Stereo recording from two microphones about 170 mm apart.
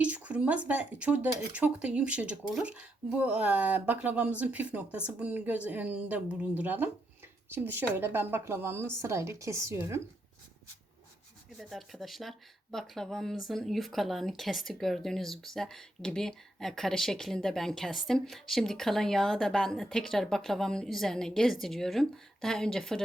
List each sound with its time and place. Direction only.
0.0 s speech: 10° right (ahead or behind)
11.7 s speech: centre (ahead or behind)